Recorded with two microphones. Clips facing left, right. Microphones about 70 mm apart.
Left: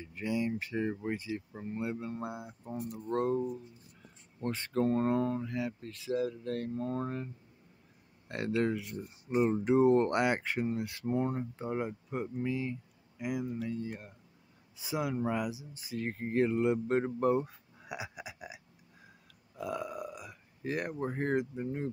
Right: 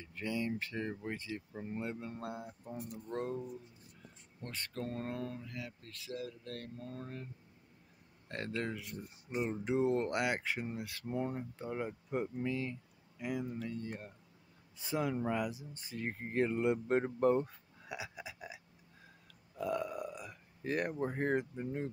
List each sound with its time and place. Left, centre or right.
0.0 s speech: centre
3.3 s speech: left
8.3 s speech: centre
12.1 s speech: centre
12.4 s speech: centre
17.8 s a sound: centre
19.5 s speech: centre